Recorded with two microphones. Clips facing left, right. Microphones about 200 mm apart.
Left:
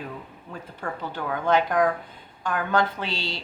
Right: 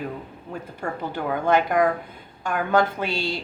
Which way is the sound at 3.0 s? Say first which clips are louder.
Right 5 dB; 50° right (ahead or behind).